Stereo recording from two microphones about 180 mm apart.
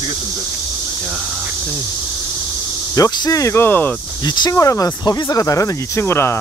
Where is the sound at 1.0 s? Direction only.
Centre (ahead or behind).